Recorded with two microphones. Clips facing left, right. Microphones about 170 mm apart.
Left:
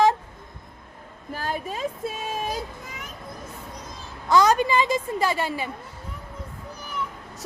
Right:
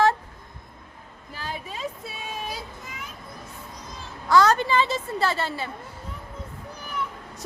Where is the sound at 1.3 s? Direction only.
45° left (ahead or behind).